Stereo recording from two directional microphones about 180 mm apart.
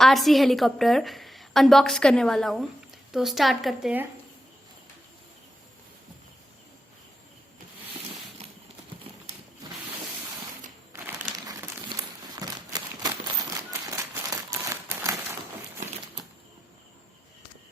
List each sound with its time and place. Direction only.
0.0 s a woman's voice: centre (ahead or behind)
10.9 s crumpling: 15° right (ahead or behind)